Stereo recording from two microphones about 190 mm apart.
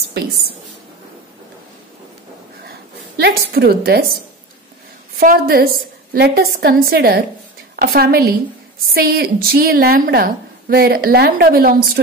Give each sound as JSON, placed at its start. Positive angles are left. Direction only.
{"t": 3.2, "sound": "a woman's voice", "side_deg": -55}
{"t": 5.2, "sound": "a woman's voice", "side_deg": -50}